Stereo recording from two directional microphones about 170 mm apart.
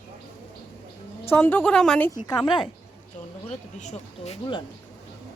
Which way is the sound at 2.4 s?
30° left (ahead or behind).